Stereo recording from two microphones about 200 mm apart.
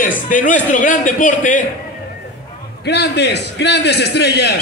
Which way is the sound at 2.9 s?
60° left (ahead or behind).